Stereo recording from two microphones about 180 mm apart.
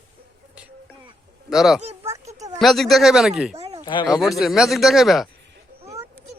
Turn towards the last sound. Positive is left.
turn(degrees=0)  # may be behind; listen again after turning